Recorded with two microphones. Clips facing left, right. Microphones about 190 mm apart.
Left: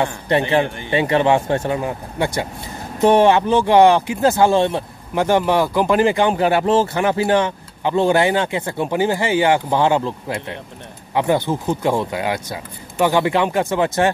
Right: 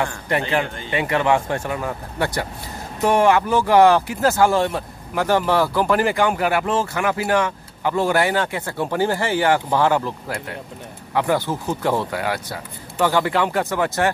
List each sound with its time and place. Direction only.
0.0 s speech: 25° left (ahead or behind)